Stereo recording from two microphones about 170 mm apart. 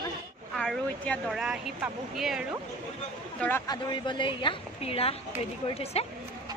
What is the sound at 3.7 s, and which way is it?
A woman's voice, 25° left (ahead or behind).